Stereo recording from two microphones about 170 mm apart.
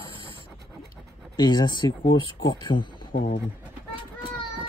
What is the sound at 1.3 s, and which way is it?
Speech, 25° left (ahead or behind).